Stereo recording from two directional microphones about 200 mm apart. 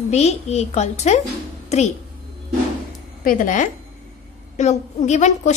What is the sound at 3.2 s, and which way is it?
A woman's voice, 45° left (ahead or behind).